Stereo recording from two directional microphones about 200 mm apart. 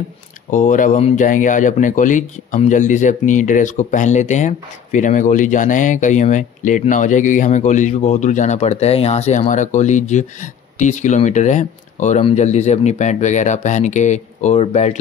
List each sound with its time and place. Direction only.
0.5 s speech: 40° left (ahead or behind)